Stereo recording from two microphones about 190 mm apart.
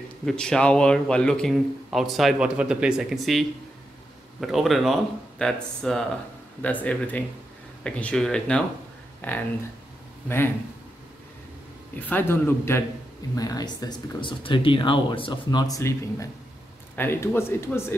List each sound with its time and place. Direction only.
0.2 s a man's voice: 5° left (ahead or behind)
12.0 s speech: 10° left (ahead or behind)